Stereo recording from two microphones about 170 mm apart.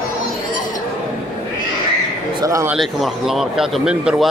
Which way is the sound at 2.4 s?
20° right (ahead or behind).